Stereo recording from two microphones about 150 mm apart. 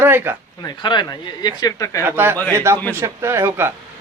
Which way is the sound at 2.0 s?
15° right (ahead or behind).